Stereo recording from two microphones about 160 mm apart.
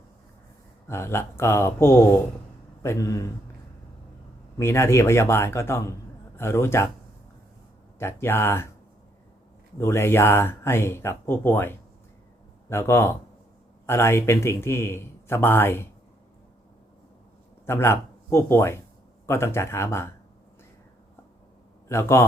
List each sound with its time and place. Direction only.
0.9 s a man's voice: 15° left (ahead or behind)
4.5 s a man's voice: 15° left (ahead or behind)
7.9 s a man's voice: 15° left (ahead or behind)
9.7 s a man's voice: 15° left (ahead or behind)
17.7 s a man's voice: 15° left (ahead or behind)
21.8 s a man's voice: 15° left (ahead or behind)